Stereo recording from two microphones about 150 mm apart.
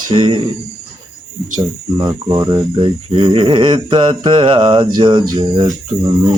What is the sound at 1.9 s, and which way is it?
Speech, 25° right (ahead or behind).